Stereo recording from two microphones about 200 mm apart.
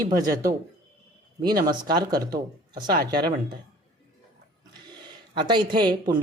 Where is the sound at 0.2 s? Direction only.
20° right (ahead or behind).